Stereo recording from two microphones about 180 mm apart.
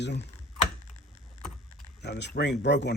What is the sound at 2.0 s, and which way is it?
Speech, 70° left (ahead or behind).